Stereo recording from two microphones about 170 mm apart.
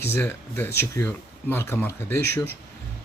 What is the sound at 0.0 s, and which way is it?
Speech, 15° left (ahead or behind).